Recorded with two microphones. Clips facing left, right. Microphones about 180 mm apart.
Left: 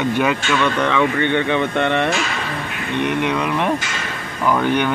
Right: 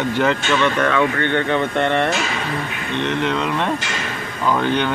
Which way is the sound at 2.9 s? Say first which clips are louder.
Left 1 dB; 15° left (ahead or behind).